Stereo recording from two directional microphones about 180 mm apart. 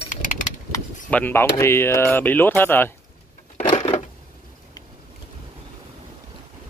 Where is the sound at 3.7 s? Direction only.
35° left (ahead or behind).